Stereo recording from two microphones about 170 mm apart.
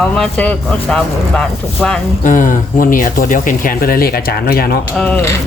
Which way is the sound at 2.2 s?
50° left (ahead or behind).